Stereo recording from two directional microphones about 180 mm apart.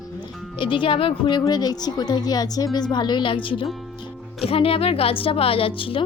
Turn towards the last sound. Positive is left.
turn(degrees=30)  # may be behind; listen again after turning